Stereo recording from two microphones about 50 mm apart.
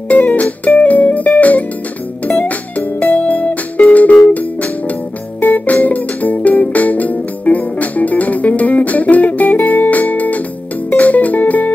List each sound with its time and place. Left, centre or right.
0.1 s music: left